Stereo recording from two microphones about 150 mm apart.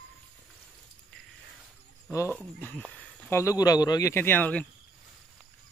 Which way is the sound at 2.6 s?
10° left (ahead or behind).